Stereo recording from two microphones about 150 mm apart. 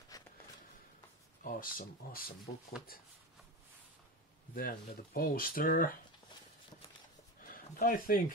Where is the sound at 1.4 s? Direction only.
70° left (ahead or behind).